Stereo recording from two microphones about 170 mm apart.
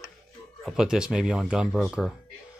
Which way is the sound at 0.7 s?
5° right (ahead or behind).